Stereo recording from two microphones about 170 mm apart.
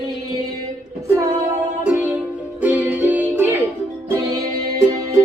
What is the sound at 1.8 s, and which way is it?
Music, 10° right (ahead or behind).